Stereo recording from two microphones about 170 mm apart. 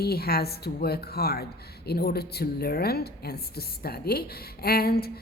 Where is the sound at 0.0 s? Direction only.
65° left (ahead or behind).